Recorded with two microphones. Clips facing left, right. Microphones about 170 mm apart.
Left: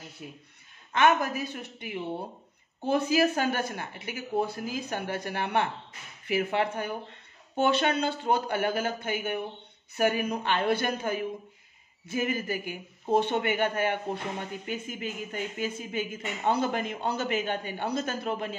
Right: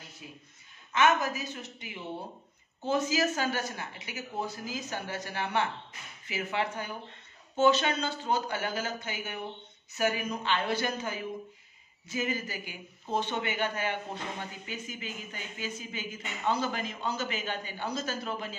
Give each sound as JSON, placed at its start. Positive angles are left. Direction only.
{"t": 0.2, "sound": "a woman's voice", "side_deg": 55}
{"t": 2.9, "sound": "a woman's voice", "side_deg": 55}